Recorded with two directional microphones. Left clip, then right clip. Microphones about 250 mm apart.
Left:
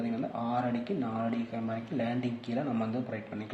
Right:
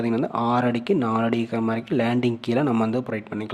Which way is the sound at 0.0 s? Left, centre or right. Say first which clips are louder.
Right 11 dB; right.